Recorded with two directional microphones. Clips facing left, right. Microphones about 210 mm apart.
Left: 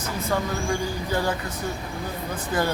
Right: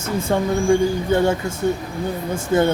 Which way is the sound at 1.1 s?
25° right (ahead or behind).